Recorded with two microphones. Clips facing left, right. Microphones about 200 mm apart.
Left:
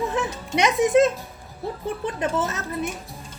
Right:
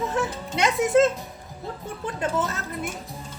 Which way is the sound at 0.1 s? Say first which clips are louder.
Left 1 dB; 20° left (ahead or behind).